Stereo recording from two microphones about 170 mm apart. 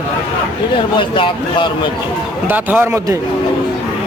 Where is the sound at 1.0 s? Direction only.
30° left (ahead or behind).